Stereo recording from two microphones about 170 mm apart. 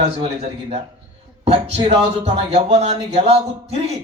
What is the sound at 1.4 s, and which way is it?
Speech, 35° right (ahead or behind).